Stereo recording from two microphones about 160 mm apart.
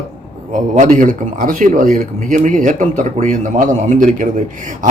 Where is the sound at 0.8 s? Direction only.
55° right (ahead or behind).